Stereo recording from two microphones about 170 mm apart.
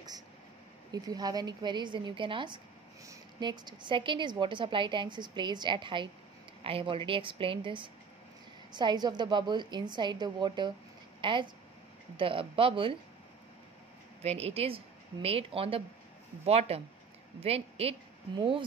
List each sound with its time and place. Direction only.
0.9 s a woman's voice: 25° right (ahead or behind)
14.2 s a woman's voice: 40° right (ahead or behind)